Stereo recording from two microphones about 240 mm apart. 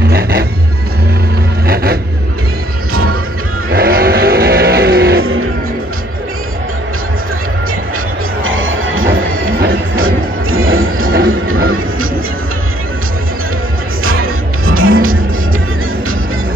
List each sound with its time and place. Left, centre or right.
0.1 s music: right
1.7 s vehicle: right
2.9 s music: right
3.7 s vehicle: right
8.5 s music: right
9.0 s music: right
11.2 s music: right
14.2 s music: right